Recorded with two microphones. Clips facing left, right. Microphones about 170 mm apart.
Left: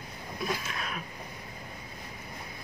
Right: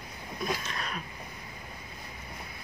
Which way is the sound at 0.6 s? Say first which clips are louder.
Even; 5° left (ahead or behind).